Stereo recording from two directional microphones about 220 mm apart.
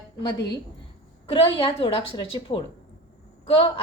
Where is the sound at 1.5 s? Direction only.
25° left (ahead or behind).